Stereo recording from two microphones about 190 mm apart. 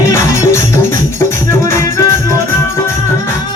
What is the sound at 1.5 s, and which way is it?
Music, 15° left (ahead or behind).